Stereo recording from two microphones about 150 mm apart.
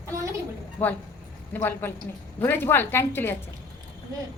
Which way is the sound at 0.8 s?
10° left (ahead or behind).